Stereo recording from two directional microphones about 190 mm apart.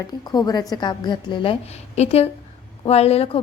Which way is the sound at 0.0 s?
20° left (ahead or behind).